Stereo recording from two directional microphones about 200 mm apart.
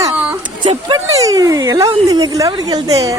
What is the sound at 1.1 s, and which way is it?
Speech, 15° right (ahead or behind).